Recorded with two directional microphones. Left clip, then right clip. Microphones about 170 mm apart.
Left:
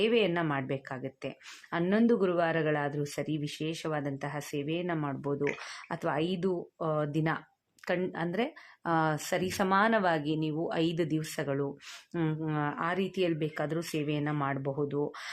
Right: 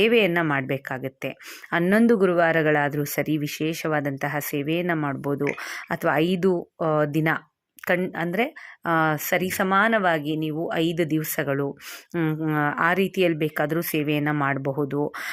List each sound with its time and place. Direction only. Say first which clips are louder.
0.0 s speech: right 8 dB; 25° right (ahead or behind)